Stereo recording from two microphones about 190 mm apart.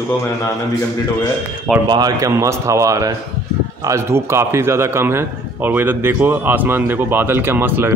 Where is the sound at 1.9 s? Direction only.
20° right (ahead or behind).